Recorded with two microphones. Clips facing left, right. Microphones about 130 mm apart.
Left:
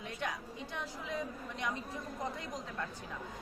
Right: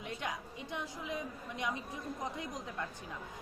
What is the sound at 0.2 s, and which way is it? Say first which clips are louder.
A woman's voice: left 1 dB; 15° right (ahead or behind).